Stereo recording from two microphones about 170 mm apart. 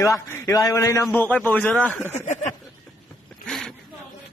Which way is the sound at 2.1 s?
45° left (ahead or behind).